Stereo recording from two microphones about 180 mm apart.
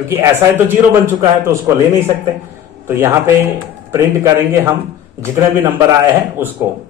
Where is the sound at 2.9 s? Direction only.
15° right (ahead or behind).